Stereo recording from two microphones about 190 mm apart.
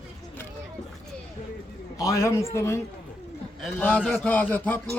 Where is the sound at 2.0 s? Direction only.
15° left (ahead or behind).